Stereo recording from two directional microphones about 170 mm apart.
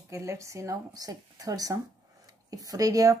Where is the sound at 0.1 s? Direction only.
20° right (ahead or behind).